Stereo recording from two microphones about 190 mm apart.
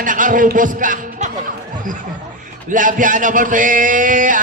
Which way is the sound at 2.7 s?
45° right (ahead or behind).